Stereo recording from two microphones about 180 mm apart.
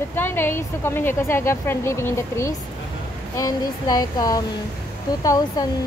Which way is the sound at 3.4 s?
20° left (ahead or behind).